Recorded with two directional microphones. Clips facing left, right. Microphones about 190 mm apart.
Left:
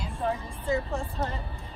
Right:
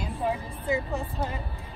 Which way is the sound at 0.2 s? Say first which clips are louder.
Even; 10° right (ahead or behind).